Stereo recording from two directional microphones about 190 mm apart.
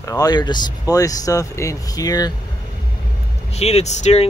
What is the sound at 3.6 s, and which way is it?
Speech, 35° left (ahead or behind).